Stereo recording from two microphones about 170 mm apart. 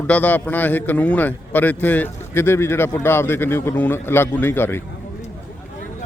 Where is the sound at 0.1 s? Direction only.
10° left (ahead or behind).